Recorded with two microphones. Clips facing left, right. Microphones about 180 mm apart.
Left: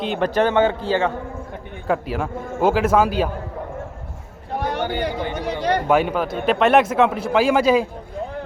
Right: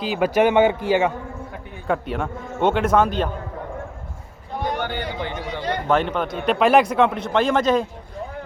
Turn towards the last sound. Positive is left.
turn(degrees=10)  # may be behind; listen again after turning